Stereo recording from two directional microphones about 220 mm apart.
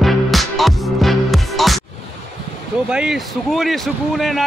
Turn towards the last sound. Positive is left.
turn(degrees=0)  # may be behind; listen again after turning